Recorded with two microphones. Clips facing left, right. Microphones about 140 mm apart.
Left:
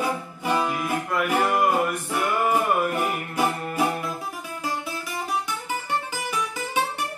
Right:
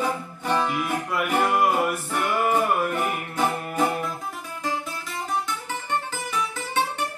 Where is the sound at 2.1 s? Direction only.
5° left (ahead or behind).